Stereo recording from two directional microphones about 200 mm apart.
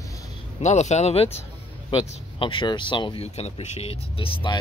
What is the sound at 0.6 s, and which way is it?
Speech, 35° left (ahead or behind).